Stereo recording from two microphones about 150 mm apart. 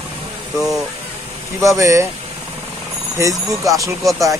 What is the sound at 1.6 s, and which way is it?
Speech, 20° right (ahead or behind).